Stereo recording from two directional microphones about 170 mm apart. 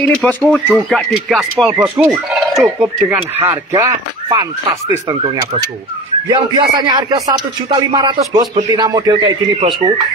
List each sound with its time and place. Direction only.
0.0 s speech: 10° left (ahead or behind)
1.8 s fowl: 10° right (ahead or behind)
5.0 s speech: 25° right (ahead or behind)